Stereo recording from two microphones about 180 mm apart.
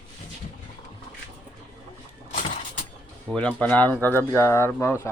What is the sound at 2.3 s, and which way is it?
Vehicle, 45° left (ahead or behind).